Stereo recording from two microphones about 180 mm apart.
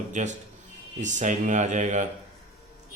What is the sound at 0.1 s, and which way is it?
Speech, 40° right (ahead or behind).